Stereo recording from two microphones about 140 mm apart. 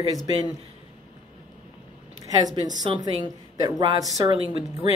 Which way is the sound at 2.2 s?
30° right (ahead or behind).